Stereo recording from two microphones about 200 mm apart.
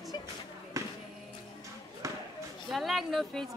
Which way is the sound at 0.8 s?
15° right (ahead or behind).